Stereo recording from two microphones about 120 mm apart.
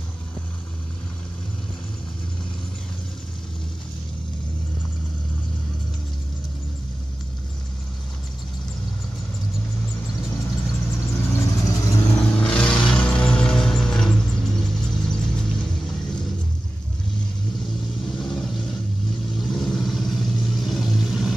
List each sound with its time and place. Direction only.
10.9 s vehicle: 20° left (ahead or behind)
12.1 s music: 10° left (ahead or behind)
18.2 s vehicle: 5° left (ahead or behind)